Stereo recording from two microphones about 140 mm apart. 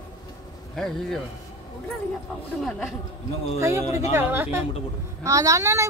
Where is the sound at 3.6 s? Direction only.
20° right (ahead or behind).